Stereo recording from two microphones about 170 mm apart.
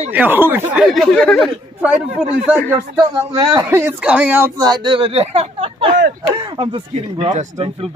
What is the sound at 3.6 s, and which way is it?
Speech, 10° right (ahead or behind).